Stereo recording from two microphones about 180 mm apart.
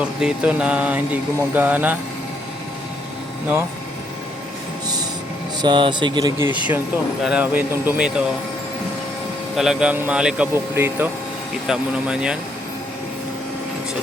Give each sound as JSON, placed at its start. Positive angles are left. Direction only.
{"t": 0.0, "sound": "speech", "side_deg": -5}
{"t": 5.6, "sound": "speech", "side_deg": -25}
{"t": 7.3, "sound": "speech", "side_deg": -10}
{"t": 9.6, "sound": "speech", "side_deg": -5}